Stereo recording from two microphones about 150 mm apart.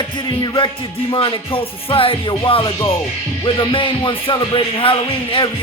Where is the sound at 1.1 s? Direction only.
35° left (ahead or behind).